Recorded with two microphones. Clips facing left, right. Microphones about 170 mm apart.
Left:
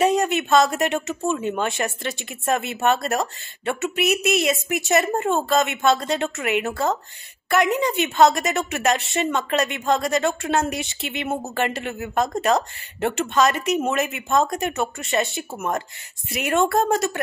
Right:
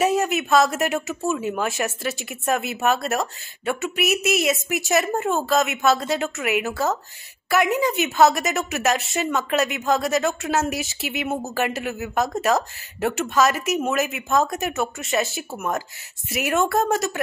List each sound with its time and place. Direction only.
0.0 s a woman's voice: 5° right (ahead or behind)